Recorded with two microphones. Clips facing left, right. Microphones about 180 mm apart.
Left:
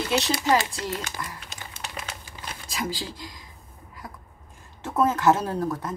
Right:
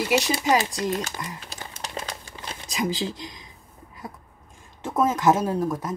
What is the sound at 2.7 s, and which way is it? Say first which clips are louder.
Speech: right 5 dB; 20° right (ahead or behind).